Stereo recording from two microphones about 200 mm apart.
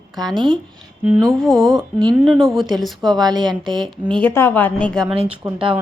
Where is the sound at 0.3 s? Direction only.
25° right (ahead or behind).